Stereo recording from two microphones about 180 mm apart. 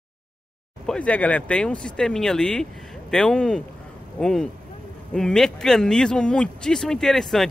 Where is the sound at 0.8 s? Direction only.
5° left (ahead or behind).